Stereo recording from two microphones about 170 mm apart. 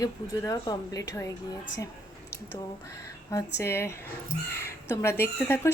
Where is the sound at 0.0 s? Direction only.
20° left (ahead or behind).